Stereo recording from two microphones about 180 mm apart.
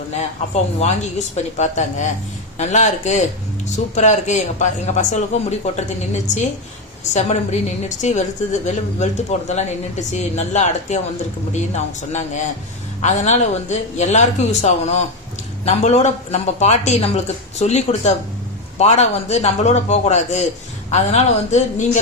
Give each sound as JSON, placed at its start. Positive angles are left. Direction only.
{"t": 0.2, "sound": "speech", "side_deg": 35}